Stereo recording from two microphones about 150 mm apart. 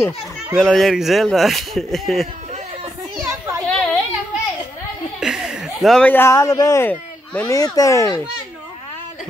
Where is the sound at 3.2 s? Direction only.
20° right (ahead or behind).